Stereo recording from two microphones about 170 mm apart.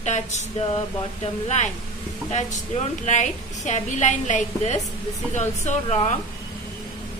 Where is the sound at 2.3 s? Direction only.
45° left (ahead or behind).